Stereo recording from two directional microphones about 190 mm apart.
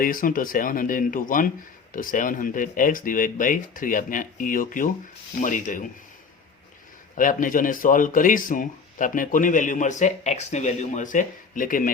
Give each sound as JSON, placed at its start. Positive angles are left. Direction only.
{"t": 0.0, "sound": "a man's voice", "side_deg": 45}
{"t": 7.2, "sound": "a man's voice", "side_deg": 45}